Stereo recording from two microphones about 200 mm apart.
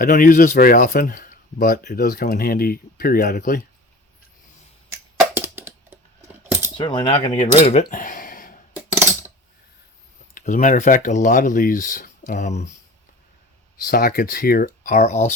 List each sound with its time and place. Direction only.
0.0 s speech: 45° left (ahead or behind)
4.9 s a sound: 10° right (ahead or behind)
6.7 s speech: 25° left (ahead or behind); by 8.5 s 45° left (ahead or behind)
10.3 s speech: 40° left (ahead or behind)
13.8 s speech: 45° left (ahead or behind)